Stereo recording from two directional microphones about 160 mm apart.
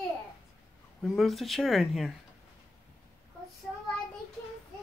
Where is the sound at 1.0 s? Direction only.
Centre (ahead or behind).